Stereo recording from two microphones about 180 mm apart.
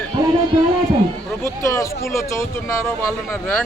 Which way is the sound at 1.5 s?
15° left (ahead or behind).